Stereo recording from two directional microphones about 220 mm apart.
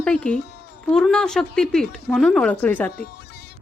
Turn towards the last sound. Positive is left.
turn(degrees=5)  # may be behind; listen again after turning